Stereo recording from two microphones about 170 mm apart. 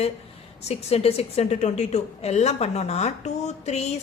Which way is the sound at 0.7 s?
35° left (ahead or behind).